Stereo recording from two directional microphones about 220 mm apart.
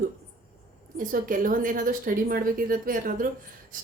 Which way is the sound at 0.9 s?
40° right (ahead or behind).